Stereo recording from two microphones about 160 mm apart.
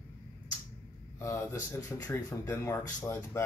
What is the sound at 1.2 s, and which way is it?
Speech, 20° left (ahead or behind).